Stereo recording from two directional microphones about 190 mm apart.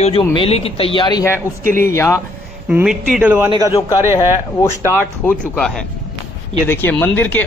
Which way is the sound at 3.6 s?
20° left (ahead or behind).